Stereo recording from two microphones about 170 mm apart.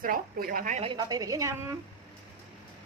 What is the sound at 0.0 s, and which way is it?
Speech, 55° right (ahead or behind).